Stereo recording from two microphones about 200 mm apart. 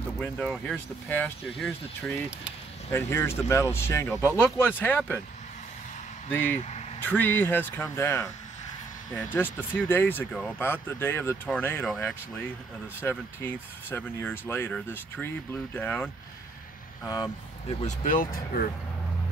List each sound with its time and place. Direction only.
0.2 s speech: 5° left (ahead or behind)
6.3 s speech: 10° left (ahead or behind)
17.0 s speech: 20° left (ahead or behind)
17.8 s speech: 45° left (ahead or behind)